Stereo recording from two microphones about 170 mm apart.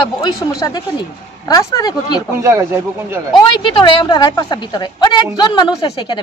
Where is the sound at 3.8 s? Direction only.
25° left (ahead or behind).